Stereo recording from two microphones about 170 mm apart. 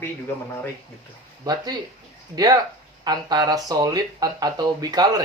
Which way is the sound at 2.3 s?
25° right (ahead or behind).